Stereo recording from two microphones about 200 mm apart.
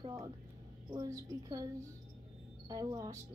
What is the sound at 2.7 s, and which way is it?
Speech, 20° right (ahead or behind).